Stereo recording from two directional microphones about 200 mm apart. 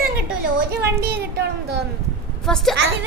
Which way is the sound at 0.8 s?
55° right (ahead or behind).